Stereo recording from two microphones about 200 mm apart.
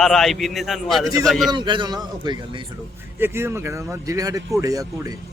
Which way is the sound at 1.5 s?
25° right (ahead or behind).